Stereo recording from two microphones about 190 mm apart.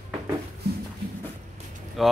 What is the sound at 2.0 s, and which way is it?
Speech, centre (ahead or behind).